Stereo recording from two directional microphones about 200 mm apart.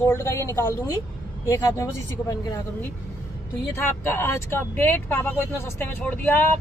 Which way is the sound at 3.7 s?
10° left (ahead or behind).